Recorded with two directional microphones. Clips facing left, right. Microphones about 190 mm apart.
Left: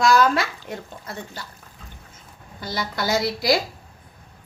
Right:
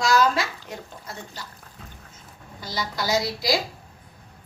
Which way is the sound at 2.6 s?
55° left (ahead or behind).